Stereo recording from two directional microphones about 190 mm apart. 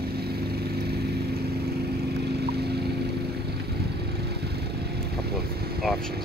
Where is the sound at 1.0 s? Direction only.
60° right (ahead or behind).